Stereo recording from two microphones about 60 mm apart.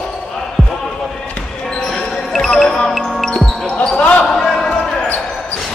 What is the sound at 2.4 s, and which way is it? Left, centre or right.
Music, centre.